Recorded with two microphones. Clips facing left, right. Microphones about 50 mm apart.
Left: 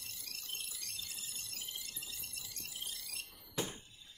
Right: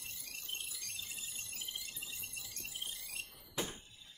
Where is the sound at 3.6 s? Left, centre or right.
Centre.